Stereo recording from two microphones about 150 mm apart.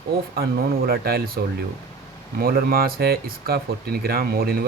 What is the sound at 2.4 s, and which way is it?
Speech, 80° right.